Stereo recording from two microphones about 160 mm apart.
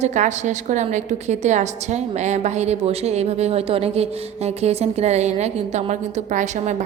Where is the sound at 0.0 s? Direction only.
50° right (ahead or behind).